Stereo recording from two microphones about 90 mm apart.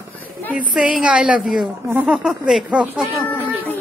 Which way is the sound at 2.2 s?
5° right (ahead or behind).